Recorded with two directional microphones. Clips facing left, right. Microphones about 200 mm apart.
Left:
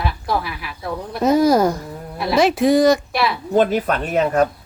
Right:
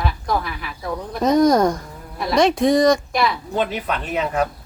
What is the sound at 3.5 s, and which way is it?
Speech, 45° left (ahead or behind).